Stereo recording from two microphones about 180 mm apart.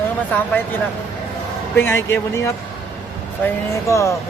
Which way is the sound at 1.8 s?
15° left (ahead or behind).